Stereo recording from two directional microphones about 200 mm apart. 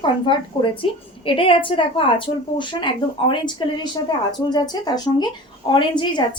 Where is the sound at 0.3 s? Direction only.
25° left (ahead or behind).